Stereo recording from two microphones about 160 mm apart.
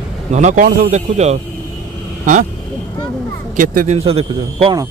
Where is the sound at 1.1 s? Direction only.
45° right (ahead or behind).